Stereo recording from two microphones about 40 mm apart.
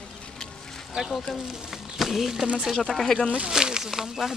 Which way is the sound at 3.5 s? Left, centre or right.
Centre.